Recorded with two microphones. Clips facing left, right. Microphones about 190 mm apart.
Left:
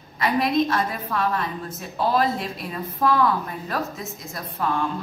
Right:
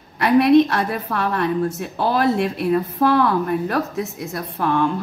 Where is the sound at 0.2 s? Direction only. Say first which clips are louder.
Right 8 dB; 65° right (ahead or behind).